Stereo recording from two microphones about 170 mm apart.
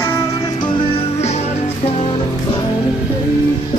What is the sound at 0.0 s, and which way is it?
Music, 15° left (ahead or behind).